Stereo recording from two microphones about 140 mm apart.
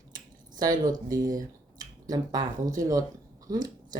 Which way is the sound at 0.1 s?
30° right (ahead or behind).